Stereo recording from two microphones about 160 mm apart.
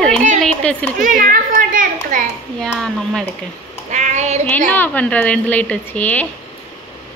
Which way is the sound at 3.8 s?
50° right (ahead or behind).